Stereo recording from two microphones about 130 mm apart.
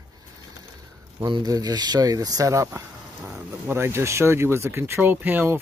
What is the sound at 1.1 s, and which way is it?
Speech, 35° right (ahead or behind).